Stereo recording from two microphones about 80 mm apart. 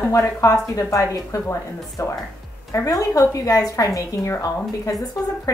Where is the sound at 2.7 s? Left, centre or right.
Left.